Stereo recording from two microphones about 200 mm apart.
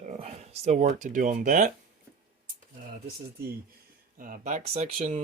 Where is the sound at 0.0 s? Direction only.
35° right (ahead or behind).